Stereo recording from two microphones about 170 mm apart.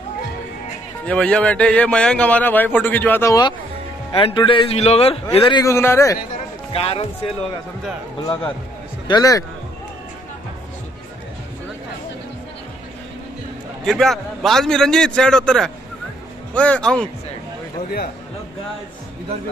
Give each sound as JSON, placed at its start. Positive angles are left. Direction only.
{"t": 1.0, "sound": "a man's voice", "side_deg": 5}
{"t": 4.1, "sound": "a man's voice", "side_deg": 30}
{"t": 6.7, "sound": "a man's voice", "side_deg": 35}
{"t": 9.0, "sound": "a man's voice", "side_deg": 25}
{"t": 13.8, "sound": "a man's voice", "side_deg": 0}